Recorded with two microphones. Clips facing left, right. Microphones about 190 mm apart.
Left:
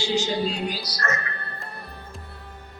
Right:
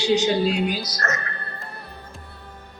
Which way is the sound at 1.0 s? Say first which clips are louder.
Even; centre (ahead or behind).